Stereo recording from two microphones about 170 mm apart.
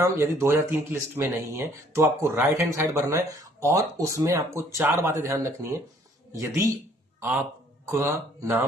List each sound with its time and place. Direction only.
0.0 s speech: 15° right (ahead or behind)
7.9 s speech: 15° right (ahead or behind)